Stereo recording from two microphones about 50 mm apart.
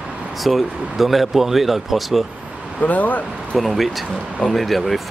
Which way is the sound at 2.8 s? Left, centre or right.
Left.